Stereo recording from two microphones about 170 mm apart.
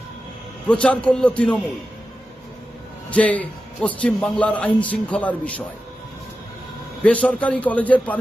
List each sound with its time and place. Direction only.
0.7 s a man's voice: 5° left (ahead or behind)
3.1 s a man's voice: 10° left (ahead or behind)
7.0 s a man's voice: 5° left (ahead or behind)